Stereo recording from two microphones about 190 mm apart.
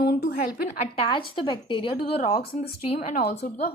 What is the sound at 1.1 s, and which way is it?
Speech, 25° left (ahead or behind).